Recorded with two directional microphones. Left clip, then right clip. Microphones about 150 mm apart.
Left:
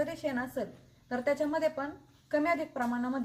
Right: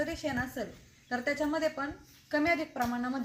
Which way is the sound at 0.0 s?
30° left (ahead or behind).